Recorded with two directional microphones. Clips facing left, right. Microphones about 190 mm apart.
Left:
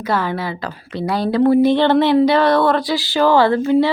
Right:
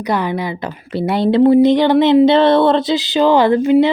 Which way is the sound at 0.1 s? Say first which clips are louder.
Right 2 dB; 15° right (ahead or behind).